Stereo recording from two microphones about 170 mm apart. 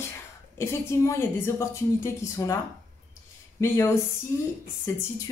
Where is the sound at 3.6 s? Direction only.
15° left (ahead or behind).